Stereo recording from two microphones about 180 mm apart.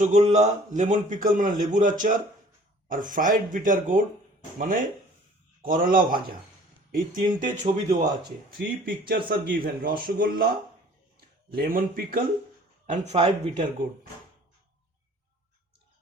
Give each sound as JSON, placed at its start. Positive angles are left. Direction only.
{"t": 0.0, "sound": "a man's voice", "side_deg": -40}
{"t": 11.5, "sound": "a man's voice", "side_deg": -55}
{"t": 12.8, "sound": "speech", "side_deg": -40}